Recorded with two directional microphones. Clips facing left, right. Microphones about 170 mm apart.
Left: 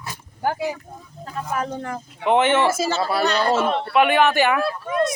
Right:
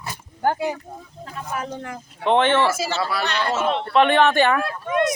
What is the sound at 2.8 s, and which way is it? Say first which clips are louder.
Speech: left 3 dB; 40° left (ahead or behind).